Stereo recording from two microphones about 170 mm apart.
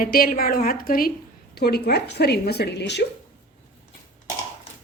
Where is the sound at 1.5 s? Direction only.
70° left (ahead or behind); by 3.1 s 85° left.